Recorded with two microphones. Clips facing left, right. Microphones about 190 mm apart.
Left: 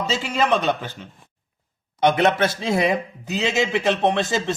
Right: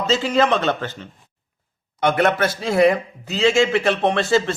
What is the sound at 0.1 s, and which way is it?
Speech, 10° left (ahead or behind).